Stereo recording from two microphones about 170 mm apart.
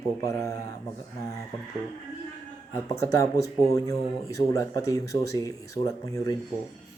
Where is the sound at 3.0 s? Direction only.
20° left (ahead or behind).